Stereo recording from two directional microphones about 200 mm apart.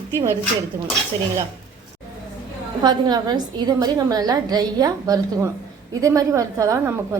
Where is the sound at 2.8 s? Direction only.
20° right (ahead or behind).